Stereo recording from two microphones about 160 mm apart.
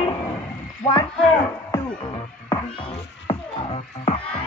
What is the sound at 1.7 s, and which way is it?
Music, 25° left (ahead or behind).